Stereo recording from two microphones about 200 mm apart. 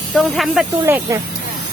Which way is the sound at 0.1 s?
5° left (ahead or behind).